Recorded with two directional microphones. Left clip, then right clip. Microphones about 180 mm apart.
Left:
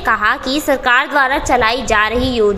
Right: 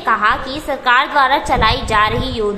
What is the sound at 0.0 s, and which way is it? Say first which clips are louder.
A woman's voice: even; 35° left (ahead or behind).